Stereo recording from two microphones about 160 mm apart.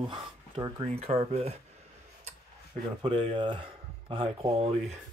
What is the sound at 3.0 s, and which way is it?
Speech, 30° right (ahead or behind).